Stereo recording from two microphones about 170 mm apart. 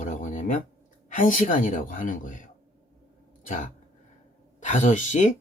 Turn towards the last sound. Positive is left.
turn(degrees=50)  # may be behind; listen again after turning